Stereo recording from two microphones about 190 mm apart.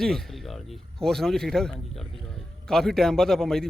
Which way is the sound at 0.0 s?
Centre (ahead or behind).